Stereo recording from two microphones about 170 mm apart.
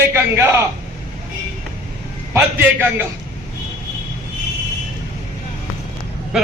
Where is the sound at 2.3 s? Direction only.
10° right (ahead or behind).